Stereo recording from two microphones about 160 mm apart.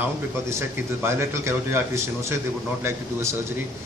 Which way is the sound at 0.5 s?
15° right (ahead or behind).